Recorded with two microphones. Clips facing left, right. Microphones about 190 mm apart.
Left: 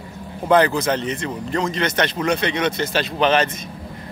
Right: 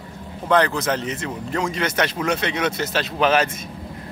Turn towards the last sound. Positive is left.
turn(degrees=-5)  # may be behind; listen again after turning